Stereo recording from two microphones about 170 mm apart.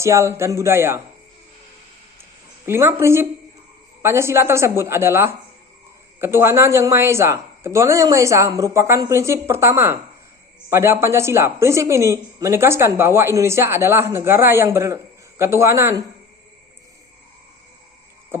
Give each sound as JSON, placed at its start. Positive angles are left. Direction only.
{"t": 0.0, "sound": "a woman's voice", "side_deg": -15}
{"t": 2.6, "sound": "a woman's voice", "side_deg": -15}